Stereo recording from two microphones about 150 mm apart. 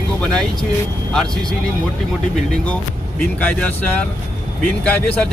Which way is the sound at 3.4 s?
10° left (ahead or behind).